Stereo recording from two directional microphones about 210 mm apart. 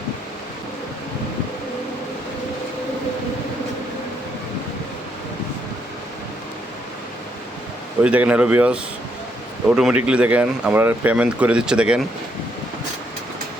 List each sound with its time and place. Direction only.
8.0 s a man's voice: 5° right (ahead or behind)